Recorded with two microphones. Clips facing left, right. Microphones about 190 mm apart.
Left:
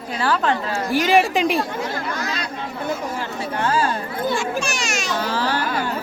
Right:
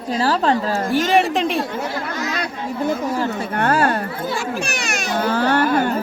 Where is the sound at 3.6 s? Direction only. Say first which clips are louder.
Right 3 dB; 65° right (ahead or behind).